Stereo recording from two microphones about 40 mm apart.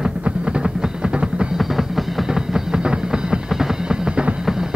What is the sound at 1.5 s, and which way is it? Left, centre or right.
Music, centre.